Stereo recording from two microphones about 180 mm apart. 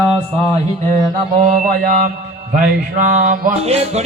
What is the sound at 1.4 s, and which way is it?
Music, 45° right (ahead or behind).